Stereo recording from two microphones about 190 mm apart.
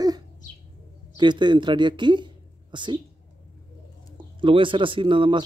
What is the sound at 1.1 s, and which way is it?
Speech, 25° right (ahead or behind).